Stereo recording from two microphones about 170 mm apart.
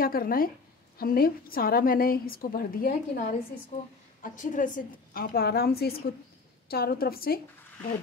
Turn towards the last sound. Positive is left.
turn(degrees=60)  # may be behind; listen again after turning